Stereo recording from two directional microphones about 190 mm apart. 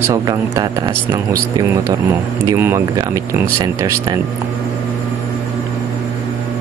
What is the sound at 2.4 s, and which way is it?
Speech, 15° right (ahead or behind).